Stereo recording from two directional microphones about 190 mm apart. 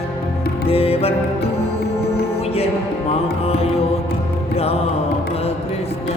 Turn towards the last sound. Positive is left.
turn(degrees=30)  # may be behind; listen again after turning